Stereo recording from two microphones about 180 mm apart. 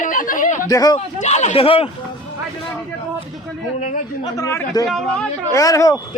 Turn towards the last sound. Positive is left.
turn(degrees=20)  # may be behind; listen again after turning